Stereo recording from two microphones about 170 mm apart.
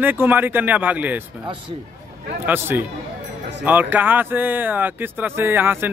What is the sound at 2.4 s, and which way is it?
Speech, 10° right (ahead or behind).